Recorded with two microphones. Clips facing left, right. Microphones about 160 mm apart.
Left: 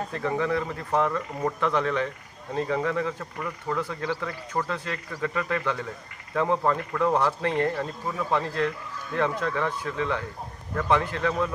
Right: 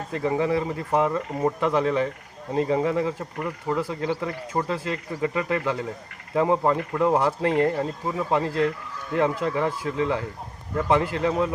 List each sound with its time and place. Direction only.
0.1 s speech: 20° right (ahead or behind)
9.7 s speech: 25° right (ahead or behind)